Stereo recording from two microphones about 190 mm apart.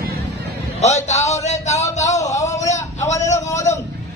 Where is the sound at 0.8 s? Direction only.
35° left (ahead or behind).